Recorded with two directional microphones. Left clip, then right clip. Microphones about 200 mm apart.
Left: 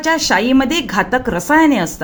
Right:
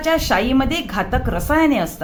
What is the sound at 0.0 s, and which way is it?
A woman's voice, 20° left (ahead or behind).